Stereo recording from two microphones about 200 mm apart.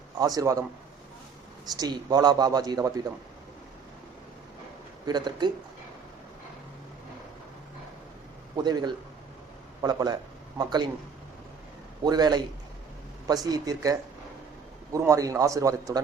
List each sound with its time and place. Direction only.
0.2 s speech: 20° right (ahead or behind)
1.6 s speech: 20° right (ahead or behind)
5.0 s speech: 20° right (ahead or behind)
8.5 s speech: 20° right (ahead or behind)
12.0 s speech: 20° right (ahead or behind)
14.9 s speech: 15° right (ahead or behind)